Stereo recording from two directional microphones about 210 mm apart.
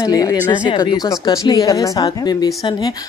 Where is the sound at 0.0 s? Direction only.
15° left (ahead or behind).